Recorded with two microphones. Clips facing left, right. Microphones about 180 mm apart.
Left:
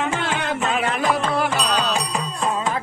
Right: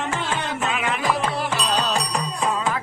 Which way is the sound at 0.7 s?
35° left (ahead or behind).